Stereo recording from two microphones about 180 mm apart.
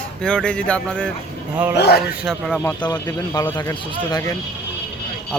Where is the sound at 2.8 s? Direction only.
25° left (ahead or behind).